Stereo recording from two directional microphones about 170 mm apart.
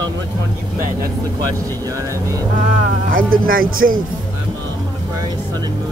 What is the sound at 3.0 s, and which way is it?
Speech, 55° right (ahead or behind).